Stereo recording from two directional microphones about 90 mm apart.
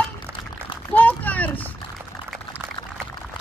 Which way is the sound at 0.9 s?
20° left (ahead or behind).